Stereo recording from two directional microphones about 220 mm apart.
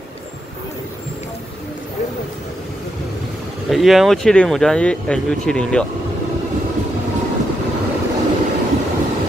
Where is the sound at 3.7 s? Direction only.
Centre (ahead or behind).